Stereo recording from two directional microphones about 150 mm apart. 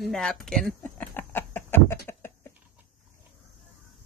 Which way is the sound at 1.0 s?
15° left (ahead or behind).